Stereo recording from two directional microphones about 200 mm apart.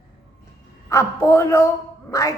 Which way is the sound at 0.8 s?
15° left (ahead or behind).